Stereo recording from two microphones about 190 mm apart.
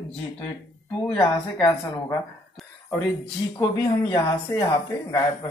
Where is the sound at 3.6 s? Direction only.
20° left (ahead or behind).